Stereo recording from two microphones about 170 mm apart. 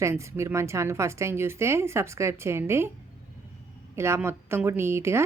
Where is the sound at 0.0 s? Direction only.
15° right (ahead or behind).